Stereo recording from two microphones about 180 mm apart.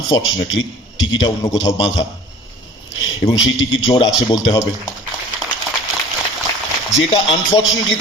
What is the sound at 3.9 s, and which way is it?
Speech, 25° left (ahead or behind).